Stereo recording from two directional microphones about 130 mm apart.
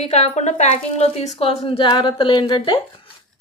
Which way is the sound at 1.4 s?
45° left (ahead or behind).